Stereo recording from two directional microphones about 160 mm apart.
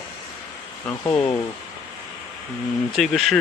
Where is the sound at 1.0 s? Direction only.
20° left (ahead or behind).